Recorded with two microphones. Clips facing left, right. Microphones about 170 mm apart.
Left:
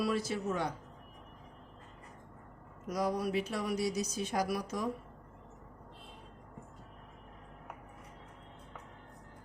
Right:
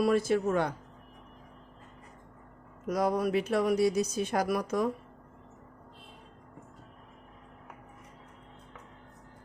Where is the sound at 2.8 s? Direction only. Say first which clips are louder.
Right 5 dB; 55° right (ahead or behind).